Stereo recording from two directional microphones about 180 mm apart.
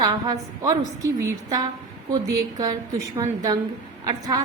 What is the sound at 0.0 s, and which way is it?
A woman's voice, 20° right (ahead or behind).